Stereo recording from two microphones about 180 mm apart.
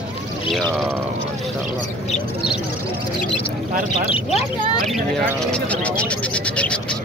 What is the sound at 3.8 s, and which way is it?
Speech, 35° left (ahead or behind).